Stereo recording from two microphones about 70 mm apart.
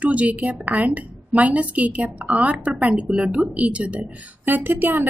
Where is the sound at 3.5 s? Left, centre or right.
Centre.